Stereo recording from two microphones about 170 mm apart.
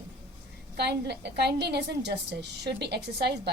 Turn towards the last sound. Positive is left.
turn(degrees=-75)  # may be behind; listen again after turning